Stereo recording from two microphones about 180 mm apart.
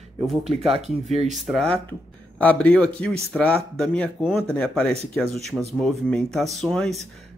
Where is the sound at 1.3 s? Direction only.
Centre (ahead or behind).